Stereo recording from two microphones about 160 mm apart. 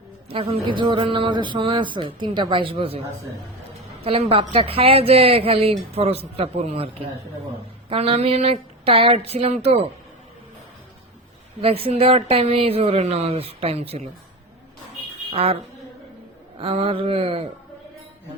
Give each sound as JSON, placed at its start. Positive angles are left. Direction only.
{"t": 0.3, "sound": "speech", "side_deg": -35}
{"t": 4.0, "sound": "speech", "side_deg": -35}
{"t": 11.6, "sound": "speech", "side_deg": -40}
{"t": 15.3, "sound": "speech", "side_deg": -40}
{"t": 16.6, "sound": "speech", "side_deg": -35}